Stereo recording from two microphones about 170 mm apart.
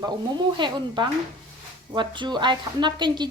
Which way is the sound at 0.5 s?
25° right (ahead or behind).